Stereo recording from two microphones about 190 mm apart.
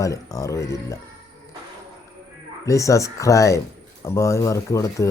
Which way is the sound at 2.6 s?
15° left (ahead or behind).